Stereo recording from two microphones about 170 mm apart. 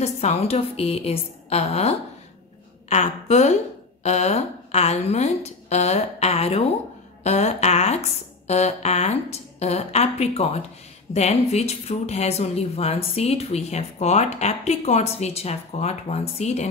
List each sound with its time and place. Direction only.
0.0 s a woman's voice: 40° left (ahead or behind)